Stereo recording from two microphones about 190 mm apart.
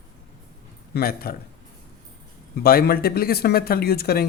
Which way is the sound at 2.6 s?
55° left (ahead or behind).